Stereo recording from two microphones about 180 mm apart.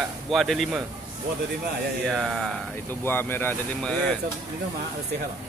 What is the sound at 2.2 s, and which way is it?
Speech, centre (ahead or behind).